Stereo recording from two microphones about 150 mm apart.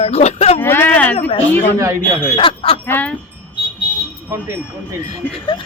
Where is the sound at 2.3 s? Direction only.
35° left (ahead or behind).